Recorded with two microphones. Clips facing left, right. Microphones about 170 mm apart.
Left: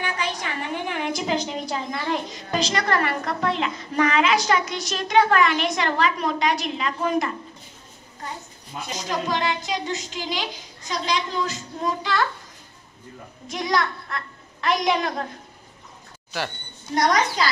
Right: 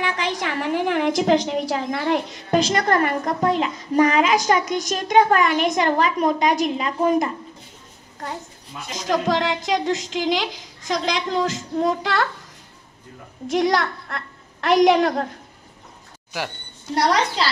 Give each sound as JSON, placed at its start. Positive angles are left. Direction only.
{"t": 0.0, "sound": "a woman's voice", "side_deg": -90}
{"t": 7.0, "sound": "speech", "side_deg": -20}
{"t": 9.3, "sound": "child singing", "side_deg": -85}
{"t": 10.9, "sound": "a woman's voice", "side_deg": -90}
{"t": 13.5, "sound": "a woman's voice", "side_deg": -70}
{"t": 16.9, "sound": "a woman's voice", "side_deg": -30}